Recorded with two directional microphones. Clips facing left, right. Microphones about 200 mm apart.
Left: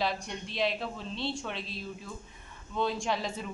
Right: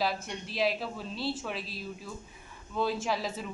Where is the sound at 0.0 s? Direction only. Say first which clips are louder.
Right 1 dB; 5° right (ahead or behind).